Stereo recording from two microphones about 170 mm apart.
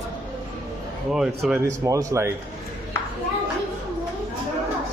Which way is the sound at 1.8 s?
20° right (ahead or behind).